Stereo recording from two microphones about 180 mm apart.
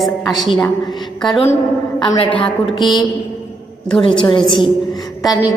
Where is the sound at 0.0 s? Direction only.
Centre (ahead or behind).